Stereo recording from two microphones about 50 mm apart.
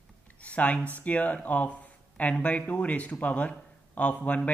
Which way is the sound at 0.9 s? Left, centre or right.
Left.